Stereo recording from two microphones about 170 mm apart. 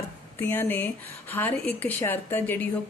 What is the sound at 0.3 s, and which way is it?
A woman's voice, 10° left (ahead or behind).